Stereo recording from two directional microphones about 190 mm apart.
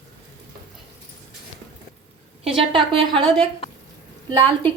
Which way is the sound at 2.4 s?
30° right (ahead or behind).